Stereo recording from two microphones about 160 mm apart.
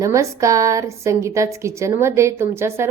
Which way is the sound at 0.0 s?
20° right (ahead or behind).